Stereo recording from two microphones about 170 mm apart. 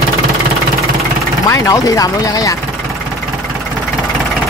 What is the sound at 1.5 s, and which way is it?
Speech, 20° left (ahead or behind).